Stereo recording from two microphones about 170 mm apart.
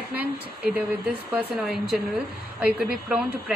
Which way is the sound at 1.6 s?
Centre (ahead or behind).